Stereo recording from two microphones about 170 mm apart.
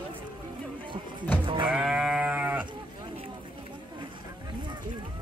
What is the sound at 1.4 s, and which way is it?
Sheep, 30° right (ahead or behind).